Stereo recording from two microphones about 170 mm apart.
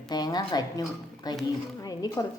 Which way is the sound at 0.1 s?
25° left (ahead or behind).